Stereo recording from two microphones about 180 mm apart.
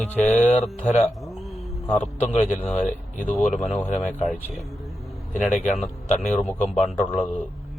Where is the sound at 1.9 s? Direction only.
10° left (ahead or behind).